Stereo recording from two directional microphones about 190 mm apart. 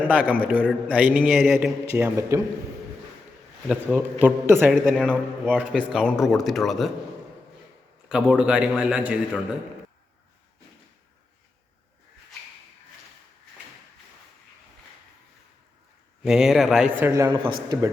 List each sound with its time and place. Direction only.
0.0 s a man's voice: 5° right (ahead or behind)
3.7 s a man's voice: 5° right (ahead or behind)
4.7 s speech: 5° left (ahead or behind)
5.1 s speech: 10° right (ahead or behind)
8.1 s speech: 5° right (ahead or behind)
16.2 s speech: centre (ahead or behind)
17.0 s a man's voice: 10° right (ahead or behind)
17.3 s speech: 25° right (ahead or behind)